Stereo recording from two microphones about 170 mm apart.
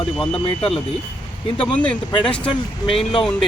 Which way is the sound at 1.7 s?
5° left (ahead or behind).